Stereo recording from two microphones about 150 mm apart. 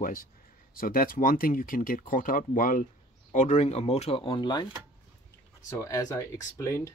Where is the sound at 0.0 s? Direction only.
70° left (ahead or behind); by 4.6 s 30° left (ahead or behind).